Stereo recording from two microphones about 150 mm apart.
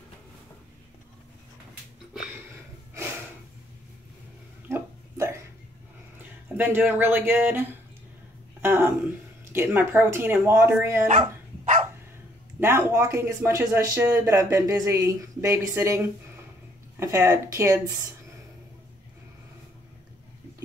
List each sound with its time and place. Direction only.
4.6 s a sound: 20° right (ahead or behind)
6.5 s speech: 10° right (ahead or behind)
8.5 s a sound: 15° right (ahead or behind)
9.5 s speech: 15° right (ahead or behind)
11.1 s dog: 55° right (ahead or behind)
12.5 s a woman's voice: 15° right (ahead or behind)